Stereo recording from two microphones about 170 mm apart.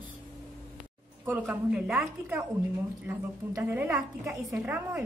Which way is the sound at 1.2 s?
10° right (ahead or behind).